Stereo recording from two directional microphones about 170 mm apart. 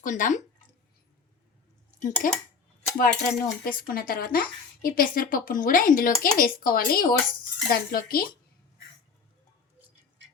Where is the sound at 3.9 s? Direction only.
60° left (ahead or behind).